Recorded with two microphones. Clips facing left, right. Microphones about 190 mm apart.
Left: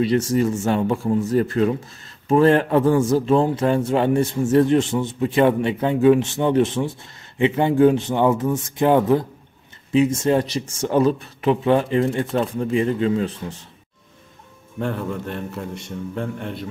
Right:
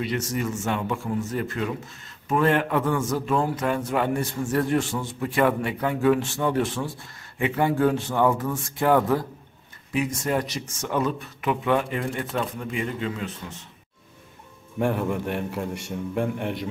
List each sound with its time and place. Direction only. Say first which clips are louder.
0.0 s a man's voice: left 9 dB; 30° left (ahead or behind)
14.8 s a man's voice: right 1 dB; 15° right (ahead or behind)